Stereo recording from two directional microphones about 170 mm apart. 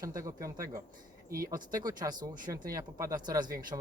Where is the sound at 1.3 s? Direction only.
55° right (ahead or behind).